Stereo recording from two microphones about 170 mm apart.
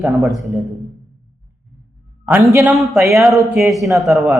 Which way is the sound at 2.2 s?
15° right (ahead or behind).